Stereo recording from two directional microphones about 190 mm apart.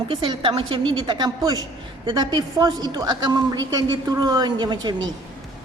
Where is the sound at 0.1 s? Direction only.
25° right (ahead or behind).